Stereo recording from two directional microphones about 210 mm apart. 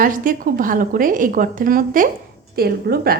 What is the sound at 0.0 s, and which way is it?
A woman's voice, 40° right (ahead or behind).